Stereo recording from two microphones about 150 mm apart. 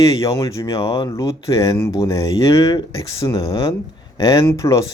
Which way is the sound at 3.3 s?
35° left (ahead or behind).